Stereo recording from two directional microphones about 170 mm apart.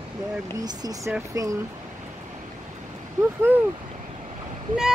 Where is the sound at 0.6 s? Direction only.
20° right (ahead or behind).